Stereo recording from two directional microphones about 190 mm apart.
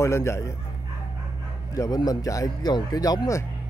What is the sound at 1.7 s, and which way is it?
Speech, 20° left (ahead or behind).